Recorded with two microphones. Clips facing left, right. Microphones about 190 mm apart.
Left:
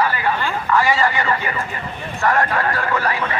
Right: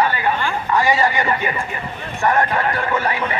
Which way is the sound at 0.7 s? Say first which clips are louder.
Even; 20° right (ahead or behind).